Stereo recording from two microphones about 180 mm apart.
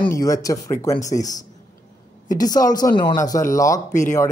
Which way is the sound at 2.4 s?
20° left (ahead or behind).